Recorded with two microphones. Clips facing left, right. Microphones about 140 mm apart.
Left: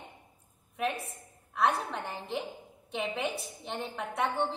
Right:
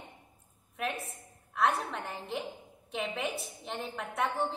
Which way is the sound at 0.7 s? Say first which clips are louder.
Left 3 dB; centre (ahead or behind).